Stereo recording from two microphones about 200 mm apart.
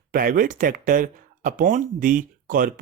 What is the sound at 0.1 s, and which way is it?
Speech, 45° right (ahead or behind).